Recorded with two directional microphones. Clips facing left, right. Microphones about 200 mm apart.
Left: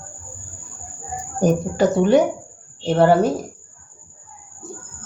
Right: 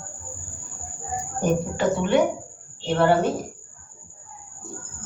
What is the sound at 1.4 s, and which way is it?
A woman's voice, 40° left (ahead or behind).